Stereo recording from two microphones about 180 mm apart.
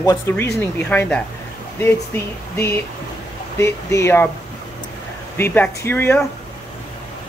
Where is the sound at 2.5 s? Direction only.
15° left (ahead or behind).